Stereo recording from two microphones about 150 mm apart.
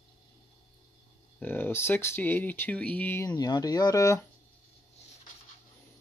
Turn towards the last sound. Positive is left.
turn(degrees=20)  # may be behind; listen again after turning